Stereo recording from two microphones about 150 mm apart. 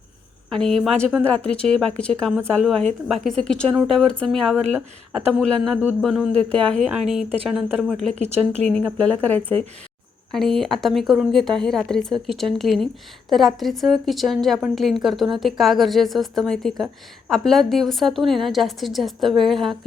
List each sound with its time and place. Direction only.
0.5 s a woman's voice: 5° left (ahead or behind)
8.1 s speech: 50° right (ahead or behind)
8.6 s a woman's voice: 5° left (ahead or behind)